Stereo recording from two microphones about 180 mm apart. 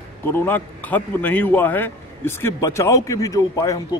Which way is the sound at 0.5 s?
10° left (ahead or behind).